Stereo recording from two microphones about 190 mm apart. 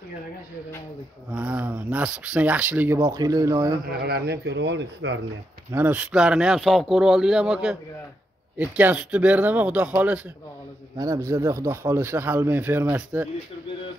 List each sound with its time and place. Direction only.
1.3 s speech: 10° right (ahead or behind)
4.0 s speech: 60° right (ahead or behind)
5.7 s speech: 10° right (ahead or behind)